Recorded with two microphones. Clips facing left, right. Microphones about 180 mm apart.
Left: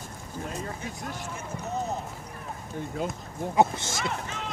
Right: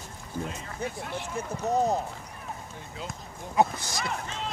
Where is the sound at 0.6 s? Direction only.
40° left (ahead or behind).